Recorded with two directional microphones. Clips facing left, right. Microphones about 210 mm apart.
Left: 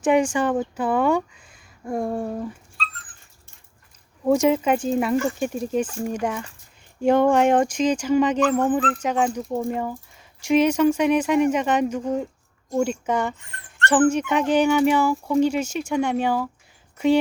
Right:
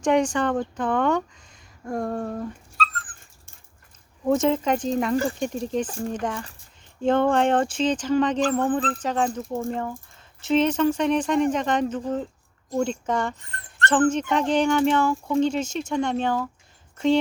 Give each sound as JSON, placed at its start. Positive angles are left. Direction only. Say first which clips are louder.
{"t": 0.0, "sound": "speech", "louder": "left 2 dB", "side_deg": 5}
{"t": 2.7, "sound": "dog", "louder": "right 7 dB", "side_deg": -45}
{"t": 4.3, "sound": "speech", "louder": "left 2 dB", "side_deg": 10}